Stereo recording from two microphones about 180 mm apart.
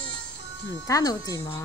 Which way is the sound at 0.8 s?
20° left (ahead or behind).